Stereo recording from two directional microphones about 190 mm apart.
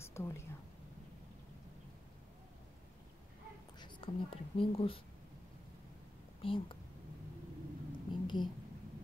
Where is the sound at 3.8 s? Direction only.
25° left (ahead or behind).